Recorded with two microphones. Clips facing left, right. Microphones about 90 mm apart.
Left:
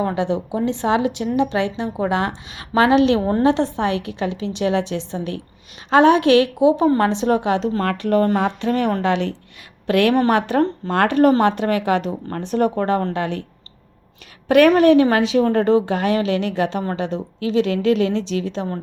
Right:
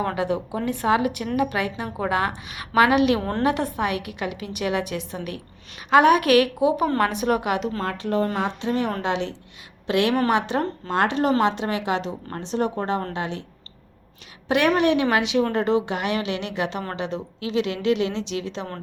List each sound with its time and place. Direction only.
0.0 s a woman's voice: 25° left (ahead or behind)
7.8 s a woman's voice: 65° left (ahead or behind)
14.4 s a woman's voice: 45° left (ahead or behind)